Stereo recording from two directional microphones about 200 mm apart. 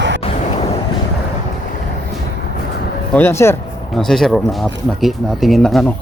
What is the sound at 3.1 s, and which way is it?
Speech, 10° left (ahead or behind).